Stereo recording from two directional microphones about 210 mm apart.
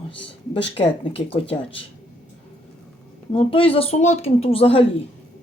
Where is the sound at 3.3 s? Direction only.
25° left (ahead or behind).